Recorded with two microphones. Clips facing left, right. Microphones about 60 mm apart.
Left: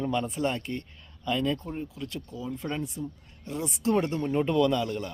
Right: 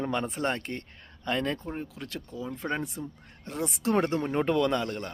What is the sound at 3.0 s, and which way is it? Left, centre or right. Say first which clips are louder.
Speech: left 2 dB; right.